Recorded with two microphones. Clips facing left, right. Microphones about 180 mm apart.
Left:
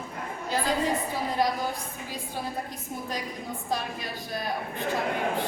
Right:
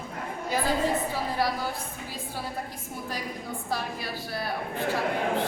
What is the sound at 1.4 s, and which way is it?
Speech, 20° left (ahead or behind).